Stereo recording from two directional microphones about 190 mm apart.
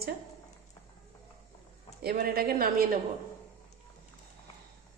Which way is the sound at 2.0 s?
55° right (ahead or behind).